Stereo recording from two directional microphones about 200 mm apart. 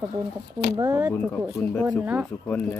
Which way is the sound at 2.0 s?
5° right (ahead or behind).